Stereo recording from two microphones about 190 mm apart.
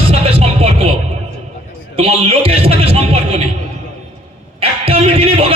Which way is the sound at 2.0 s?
30° right (ahead or behind).